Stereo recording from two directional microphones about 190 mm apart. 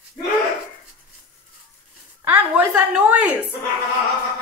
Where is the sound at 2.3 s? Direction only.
5° right (ahead or behind).